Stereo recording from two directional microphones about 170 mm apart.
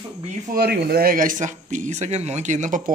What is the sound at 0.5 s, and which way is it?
Speech, 70° right (ahead or behind).